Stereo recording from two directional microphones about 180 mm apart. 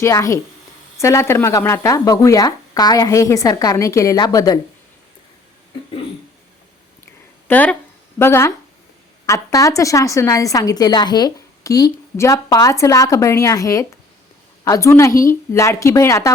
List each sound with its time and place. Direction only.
0.0 s speech: 15° left (ahead or behind)
7.4 s speech: 10° left (ahead or behind)